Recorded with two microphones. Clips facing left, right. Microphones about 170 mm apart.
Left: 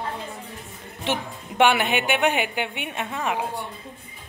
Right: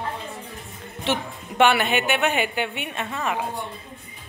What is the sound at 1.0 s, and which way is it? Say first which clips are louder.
A woman's voice: right 1 dB; 15° left (ahead or behind).